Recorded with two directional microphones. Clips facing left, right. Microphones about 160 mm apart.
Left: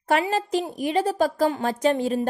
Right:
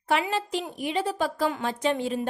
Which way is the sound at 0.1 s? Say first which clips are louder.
Left 4 dB; 40° left (ahead or behind).